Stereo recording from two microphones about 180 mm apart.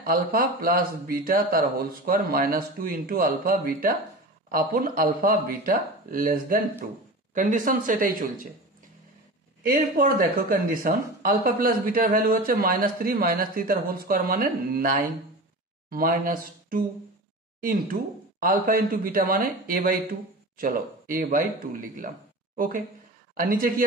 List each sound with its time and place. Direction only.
0.0 s speech: 50° right (ahead or behind)
9.6 s speech: 55° right (ahead or behind)
18.4 s speech: 50° right (ahead or behind)